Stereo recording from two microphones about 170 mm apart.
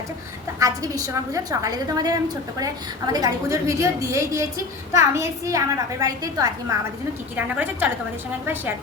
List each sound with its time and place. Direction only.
0.6 s a woman's voice: 20° right (ahead or behind)
7.3 s a woman's voice: 10° right (ahead or behind)